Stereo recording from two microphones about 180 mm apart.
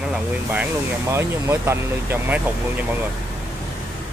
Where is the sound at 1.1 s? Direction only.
15° right (ahead or behind).